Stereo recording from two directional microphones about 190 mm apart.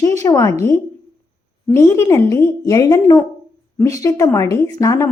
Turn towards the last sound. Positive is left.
turn(degrees=15)  # may be behind; listen again after turning